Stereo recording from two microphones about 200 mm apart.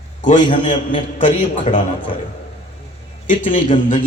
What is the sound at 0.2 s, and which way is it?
A man's voice, 40° left (ahead or behind).